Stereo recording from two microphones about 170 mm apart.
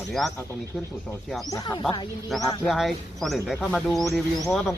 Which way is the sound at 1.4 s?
20° left (ahead or behind).